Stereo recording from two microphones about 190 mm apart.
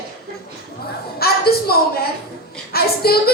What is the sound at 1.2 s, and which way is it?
A woman's voice, 55° left (ahead or behind).